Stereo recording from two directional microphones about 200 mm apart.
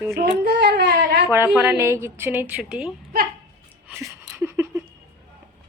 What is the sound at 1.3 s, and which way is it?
A woman's voice, 10° right (ahead or behind).